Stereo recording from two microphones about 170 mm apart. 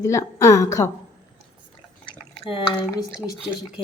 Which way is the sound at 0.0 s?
15° left (ahead or behind).